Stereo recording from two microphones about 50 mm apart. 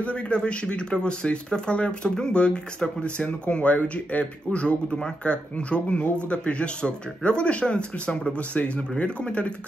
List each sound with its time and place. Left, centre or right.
0.0 s speech: left